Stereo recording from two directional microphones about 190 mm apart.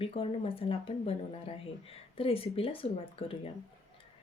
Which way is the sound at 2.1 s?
30° left (ahead or behind).